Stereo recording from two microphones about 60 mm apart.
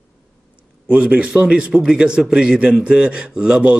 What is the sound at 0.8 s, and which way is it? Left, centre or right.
A man's voice, right.